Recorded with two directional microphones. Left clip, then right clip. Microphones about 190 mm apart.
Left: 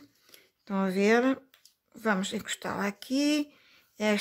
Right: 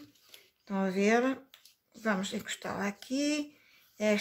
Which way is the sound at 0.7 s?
40° left (ahead or behind).